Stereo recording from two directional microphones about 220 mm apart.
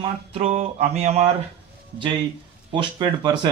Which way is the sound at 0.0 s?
25° right (ahead or behind).